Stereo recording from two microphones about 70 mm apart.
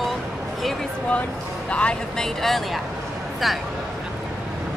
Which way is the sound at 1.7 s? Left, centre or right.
Centre.